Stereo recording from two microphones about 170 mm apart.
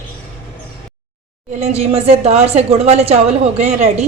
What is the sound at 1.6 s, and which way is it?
A woman's voice, 40° right (ahead or behind).